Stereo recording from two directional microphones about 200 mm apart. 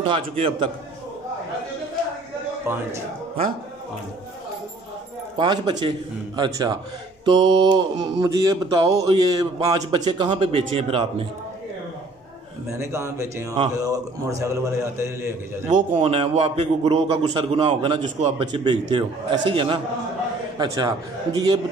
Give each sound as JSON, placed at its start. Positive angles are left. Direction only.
{"t": 0.0, "sound": "a man's voice", "side_deg": -25}
{"t": 5.4, "sound": "a man's voice", "side_deg": -20}
{"t": 12.7, "sound": "a man's voice", "side_deg": -15}
{"t": 16.0, "sound": "a man's voice", "side_deg": -30}